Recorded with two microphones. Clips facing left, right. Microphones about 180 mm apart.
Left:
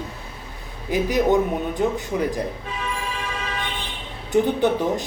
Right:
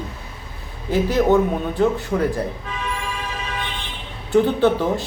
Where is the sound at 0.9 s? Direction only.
15° left (ahead or behind).